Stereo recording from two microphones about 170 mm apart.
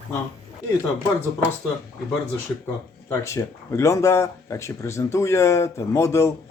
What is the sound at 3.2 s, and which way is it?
Speech, 20° left (ahead or behind).